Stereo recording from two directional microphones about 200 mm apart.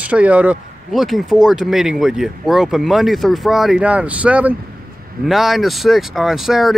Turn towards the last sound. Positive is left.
turn(degrees=0)  # may be behind; listen again after turning